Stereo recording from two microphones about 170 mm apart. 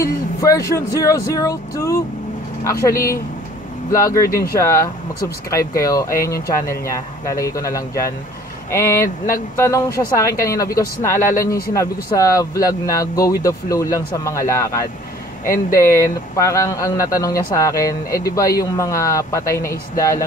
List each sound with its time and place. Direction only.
0.0 s speech: 20° left (ahead or behind)
3.9 s speech: 20° left (ahead or behind)